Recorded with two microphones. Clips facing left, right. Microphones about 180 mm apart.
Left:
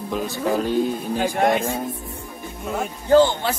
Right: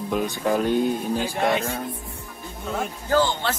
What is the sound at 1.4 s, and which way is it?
Speech, 50° left (ahead or behind).